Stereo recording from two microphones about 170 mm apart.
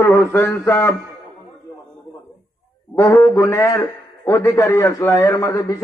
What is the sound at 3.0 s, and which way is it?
A man's voice, 20° left (ahead or behind).